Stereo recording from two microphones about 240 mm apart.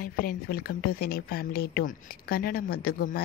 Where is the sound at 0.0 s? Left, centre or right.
Left.